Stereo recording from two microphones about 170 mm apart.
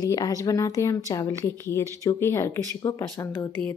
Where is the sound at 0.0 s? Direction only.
20° left (ahead or behind).